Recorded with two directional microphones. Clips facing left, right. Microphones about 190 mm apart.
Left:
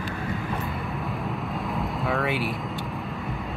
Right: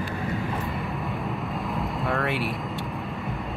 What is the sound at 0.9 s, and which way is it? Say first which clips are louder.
Vehicle: even; centre (ahead or behind).